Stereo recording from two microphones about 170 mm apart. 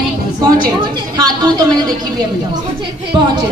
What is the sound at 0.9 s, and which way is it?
A woman's voice, 25° right (ahead or behind).